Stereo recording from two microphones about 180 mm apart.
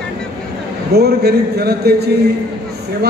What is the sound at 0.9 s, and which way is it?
A man's voice, 60° right (ahead or behind).